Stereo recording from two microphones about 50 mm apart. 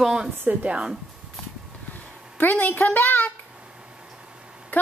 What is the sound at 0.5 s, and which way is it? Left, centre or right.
Speech, right.